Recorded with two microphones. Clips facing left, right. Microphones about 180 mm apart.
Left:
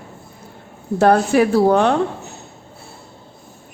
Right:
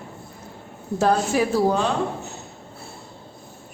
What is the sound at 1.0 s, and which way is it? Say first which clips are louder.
Speech: left 6 dB; 65° left (ahead or behind).